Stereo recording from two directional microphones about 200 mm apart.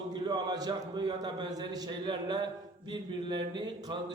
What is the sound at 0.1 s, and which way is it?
A man's voice, 20° right (ahead or behind).